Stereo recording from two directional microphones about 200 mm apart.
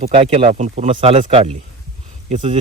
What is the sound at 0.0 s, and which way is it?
Speech, 30° right (ahead or behind).